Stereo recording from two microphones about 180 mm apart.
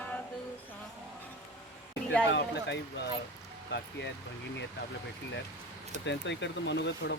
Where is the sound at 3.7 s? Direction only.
75° left (ahead or behind).